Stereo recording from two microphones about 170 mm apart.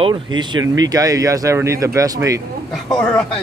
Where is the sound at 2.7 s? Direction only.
5° left (ahead or behind).